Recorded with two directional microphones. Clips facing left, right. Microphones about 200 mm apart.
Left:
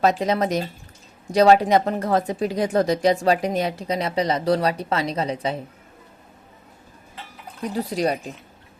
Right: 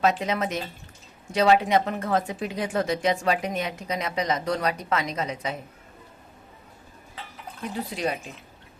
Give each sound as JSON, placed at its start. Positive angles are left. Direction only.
{"t": 0.0, "sound": "speech", "side_deg": 35}
{"t": 7.6, "sound": "speech", "side_deg": 40}